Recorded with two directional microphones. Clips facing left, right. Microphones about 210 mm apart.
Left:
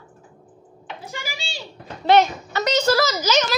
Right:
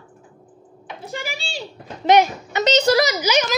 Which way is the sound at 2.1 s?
15° right (ahead or behind).